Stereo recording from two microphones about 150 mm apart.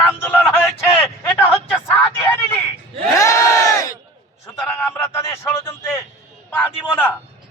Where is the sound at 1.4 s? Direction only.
15° left (ahead or behind).